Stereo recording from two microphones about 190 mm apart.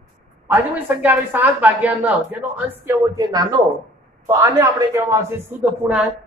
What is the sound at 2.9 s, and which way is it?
A man's voice, 20° right (ahead or behind).